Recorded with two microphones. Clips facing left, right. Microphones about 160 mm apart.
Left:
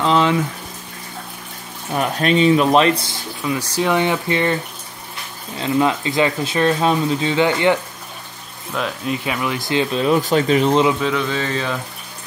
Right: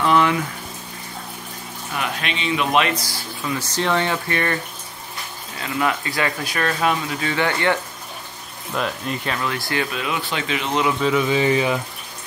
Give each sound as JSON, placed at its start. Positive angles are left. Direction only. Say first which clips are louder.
{"t": 0.0, "sound": "speech", "louder": "left 1 dB", "side_deg": 20}
{"t": 2.0, "sound": "speech", "louder": "left 10 dB", "side_deg": 40}
{"t": 3.4, "sound": "speech", "louder": "left 3 dB", "side_deg": 10}
{"t": 5.6, "sound": "speech", "louder": "left 5 dB", "side_deg": 25}
{"t": 8.7, "sound": "speech", "louder": "left 2 dB", "side_deg": 0}
{"t": 9.8, "sound": "speech", "louder": "left 9 dB", "side_deg": 35}
{"t": 11.0, "sound": "speech", "louder": "right 2 dB", "side_deg": -5}